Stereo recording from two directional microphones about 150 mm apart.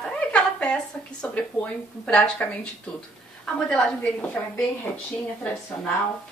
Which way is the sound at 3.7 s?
5° left (ahead or behind).